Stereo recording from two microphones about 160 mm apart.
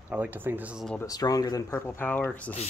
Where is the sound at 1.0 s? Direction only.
25° left (ahead or behind).